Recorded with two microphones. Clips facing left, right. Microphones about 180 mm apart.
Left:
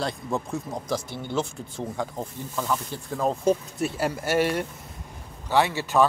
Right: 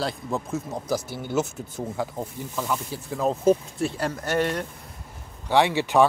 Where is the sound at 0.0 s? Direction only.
Centre (ahead or behind).